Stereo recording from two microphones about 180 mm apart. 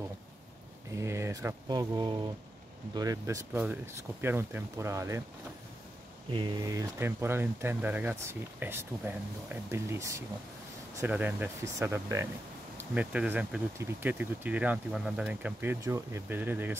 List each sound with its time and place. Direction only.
0.9 s speech: 15° right (ahead or behind)
6.3 s speech: 25° right (ahead or behind)